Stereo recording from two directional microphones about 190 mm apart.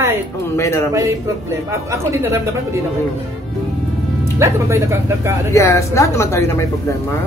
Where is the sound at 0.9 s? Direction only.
15° right (ahead or behind).